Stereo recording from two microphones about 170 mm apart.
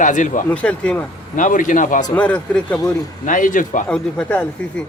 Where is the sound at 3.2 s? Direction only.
50° left (ahead or behind).